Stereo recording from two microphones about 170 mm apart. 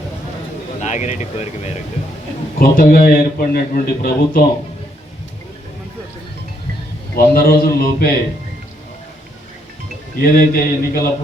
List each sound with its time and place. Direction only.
0.8 s speech: 45° left (ahead or behind)
2.6 s a man's voice: 60° left (ahead or behind)
7.2 s a man's voice: 60° left (ahead or behind)
10.2 s a man's voice: 60° left (ahead or behind)